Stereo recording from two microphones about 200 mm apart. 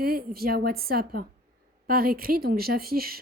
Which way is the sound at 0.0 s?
50° right (ahead or behind).